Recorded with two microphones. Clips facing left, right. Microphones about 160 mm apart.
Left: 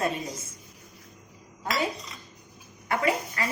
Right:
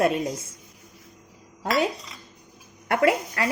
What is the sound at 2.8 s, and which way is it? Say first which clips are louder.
Speech: right 5 dB; 70° right (ahead or behind).